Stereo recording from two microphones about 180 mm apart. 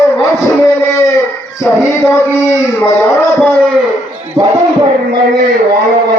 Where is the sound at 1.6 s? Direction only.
15° left (ahead or behind).